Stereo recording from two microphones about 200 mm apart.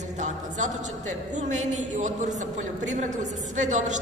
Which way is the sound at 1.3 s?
35° right (ahead or behind).